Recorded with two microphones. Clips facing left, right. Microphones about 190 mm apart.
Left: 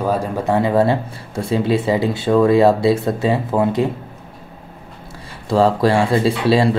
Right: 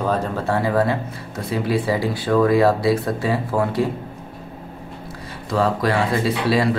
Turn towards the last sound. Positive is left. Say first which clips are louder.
# left 4 dB
turn(degrees=30)  # may be behind; listen again after turning